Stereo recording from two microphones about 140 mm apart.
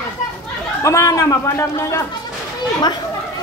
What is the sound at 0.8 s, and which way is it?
A man's voice, 25° left (ahead or behind).